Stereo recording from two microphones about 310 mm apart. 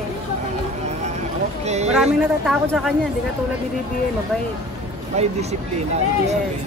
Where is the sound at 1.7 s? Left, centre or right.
Right.